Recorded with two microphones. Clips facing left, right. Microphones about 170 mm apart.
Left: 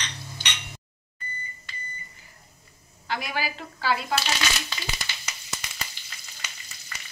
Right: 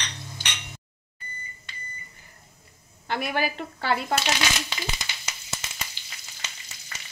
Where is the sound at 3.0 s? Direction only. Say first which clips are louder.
Right 3 dB; 55° right (ahead or behind).